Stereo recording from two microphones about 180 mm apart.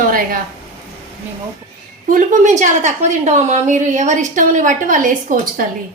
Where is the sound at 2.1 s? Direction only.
45° right (ahead or behind).